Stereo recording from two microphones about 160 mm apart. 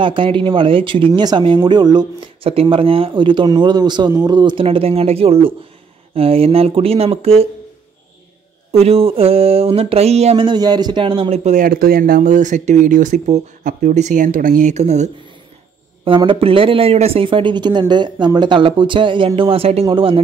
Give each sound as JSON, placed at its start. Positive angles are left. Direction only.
{"t": 0.0, "sound": "speech", "side_deg": -30}
{"t": 8.7, "sound": "speech", "side_deg": -40}
{"t": 11.6, "sound": "speech", "side_deg": -70}
{"t": 16.0, "sound": "speech", "side_deg": -30}